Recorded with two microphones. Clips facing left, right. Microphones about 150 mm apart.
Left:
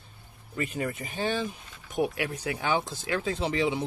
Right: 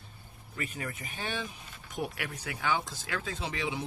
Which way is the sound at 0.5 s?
25° left (ahead or behind).